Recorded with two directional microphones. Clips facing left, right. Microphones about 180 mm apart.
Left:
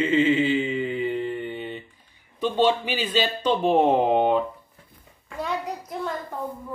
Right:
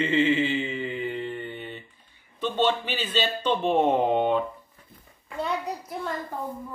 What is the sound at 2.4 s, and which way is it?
Speech, 10° left (ahead or behind).